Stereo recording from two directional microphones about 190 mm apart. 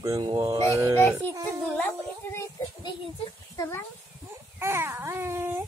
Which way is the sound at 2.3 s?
20° left (ahead or behind).